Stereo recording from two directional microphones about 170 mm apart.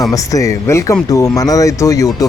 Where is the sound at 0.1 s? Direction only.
20° left (ahead or behind).